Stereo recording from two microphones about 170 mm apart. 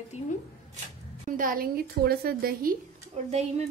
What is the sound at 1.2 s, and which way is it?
A woman's voice, 55° right (ahead or behind).